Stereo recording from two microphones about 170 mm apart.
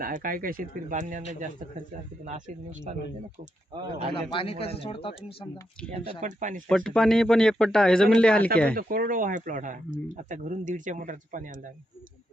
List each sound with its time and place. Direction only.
0.0 s speech: 55° right (ahead or behind)
2.9 s speech: 45° right (ahead or behind)
4.1 s a man's voice: 30° left (ahead or behind)
6.1 s speech: 45° right (ahead or behind)
6.7 s speech: 5° left (ahead or behind)
8.7 s speech: 60° right (ahead or behind)